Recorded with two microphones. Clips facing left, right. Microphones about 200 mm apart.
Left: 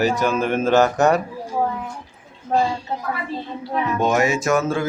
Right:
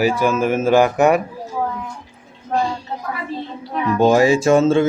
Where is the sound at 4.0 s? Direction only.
30° right (ahead or behind).